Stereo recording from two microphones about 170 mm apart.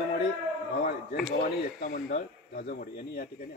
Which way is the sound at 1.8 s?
50° left (ahead or behind).